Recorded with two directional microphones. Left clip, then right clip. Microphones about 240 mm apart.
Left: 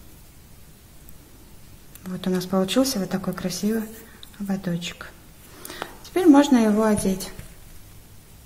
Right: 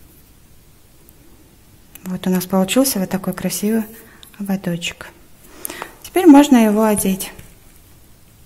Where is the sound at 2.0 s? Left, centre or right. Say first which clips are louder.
Right 5 dB; right.